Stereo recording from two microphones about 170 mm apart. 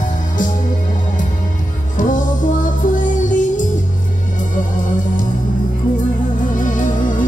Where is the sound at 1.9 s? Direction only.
50° left (ahead or behind).